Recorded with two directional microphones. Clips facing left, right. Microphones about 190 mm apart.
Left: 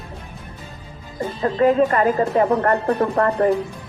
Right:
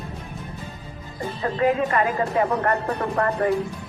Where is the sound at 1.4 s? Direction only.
40° left (ahead or behind).